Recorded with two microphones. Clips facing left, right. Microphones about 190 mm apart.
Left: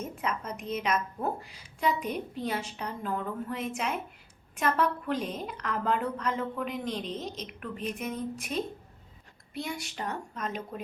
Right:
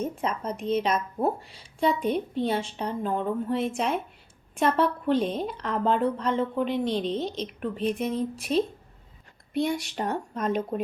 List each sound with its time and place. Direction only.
0.0 s a woman's voice: 30° right (ahead or behind)
10.0 s a woman's voice: 40° right (ahead or behind)